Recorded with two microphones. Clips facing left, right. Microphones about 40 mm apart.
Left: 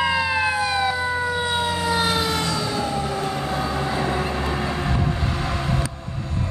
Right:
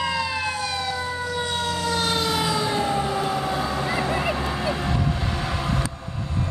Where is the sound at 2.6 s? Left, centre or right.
Right; by 3.9 s centre.